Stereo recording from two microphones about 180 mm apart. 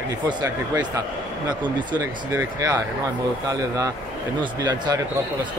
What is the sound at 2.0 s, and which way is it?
Speech, 15° right (ahead or behind).